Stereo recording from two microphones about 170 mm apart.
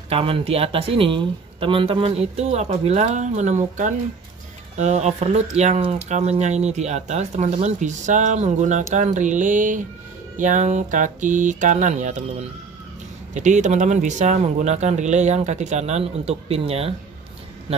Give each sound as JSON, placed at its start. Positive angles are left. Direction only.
{"t": 0.1, "sound": "speech", "side_deg": -35}